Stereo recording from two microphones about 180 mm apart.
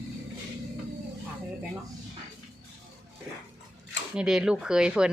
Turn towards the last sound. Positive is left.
turn(degrees=-5)  # may be behind; listen again after turning